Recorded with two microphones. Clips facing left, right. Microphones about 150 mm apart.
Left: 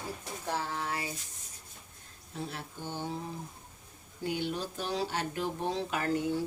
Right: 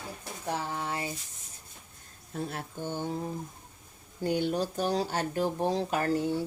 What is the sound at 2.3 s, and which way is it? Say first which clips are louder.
Speech: right 4 dB; 50° right (ahead or behind).